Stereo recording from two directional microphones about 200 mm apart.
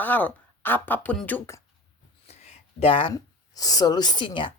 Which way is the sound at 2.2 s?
30° left (ahead or behind).